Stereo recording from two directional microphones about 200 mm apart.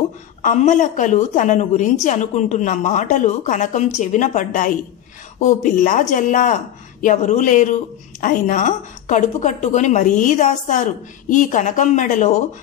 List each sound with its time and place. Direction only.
0.4 s a woman's voice: 40° left (ahead or behind)